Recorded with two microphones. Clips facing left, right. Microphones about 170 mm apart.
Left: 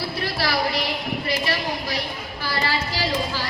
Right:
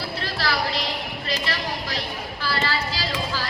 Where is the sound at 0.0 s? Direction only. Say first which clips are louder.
Left 2 dB; 10° left (ahead or behind).